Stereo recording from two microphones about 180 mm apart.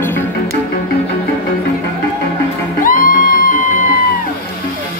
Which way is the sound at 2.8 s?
50° left (ahead or behind).